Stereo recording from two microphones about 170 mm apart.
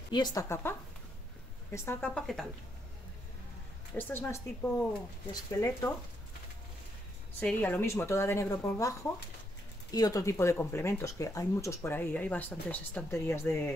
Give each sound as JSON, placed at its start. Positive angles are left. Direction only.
{"t": 0.1, "sound": "a woman's voice", "side_deg": 25}
{"t": 3.9, "sound": "a woman's voice", "side_deg": 10}
{"t": 7.3, "sound": "speech", "side_deg": 10}